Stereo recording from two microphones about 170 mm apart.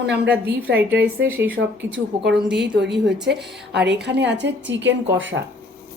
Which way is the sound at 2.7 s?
85° right.